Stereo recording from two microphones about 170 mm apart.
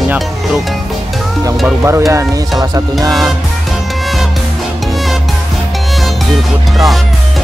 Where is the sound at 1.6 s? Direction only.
15° right (ahead or behind).